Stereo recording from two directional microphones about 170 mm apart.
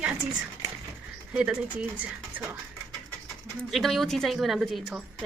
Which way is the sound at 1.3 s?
5° right (ahead or behind).